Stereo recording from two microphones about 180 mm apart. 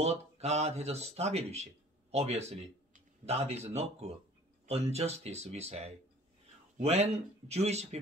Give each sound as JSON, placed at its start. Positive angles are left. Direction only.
{"t": 0.0, "sound": "speech", "side_deg": -35}